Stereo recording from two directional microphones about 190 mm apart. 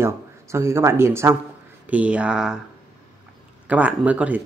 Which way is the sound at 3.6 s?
5° right (ahead or behind).